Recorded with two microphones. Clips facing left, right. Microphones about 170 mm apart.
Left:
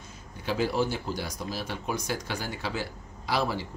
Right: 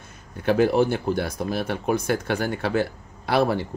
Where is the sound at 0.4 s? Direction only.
60° right (ahead or behind).